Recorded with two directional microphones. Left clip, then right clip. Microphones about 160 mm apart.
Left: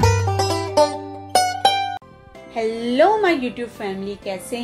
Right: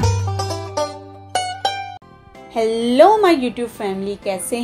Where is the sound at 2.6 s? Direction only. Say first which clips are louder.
Right 5 dB; 30° right (ahead or behind).